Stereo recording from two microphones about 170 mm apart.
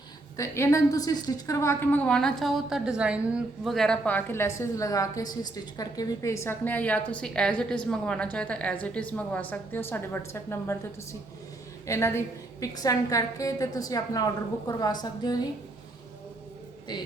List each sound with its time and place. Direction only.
0.3 s a woman's voice: 15° left (ahead or behind)
11.9 s a woman's voice: 15° left (ahead or behind)
16.9 s a woman's voice: 25° left (ahead or behind)